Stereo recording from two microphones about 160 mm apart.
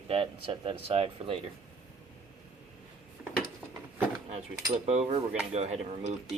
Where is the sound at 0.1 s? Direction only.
35° right (ahead or behind).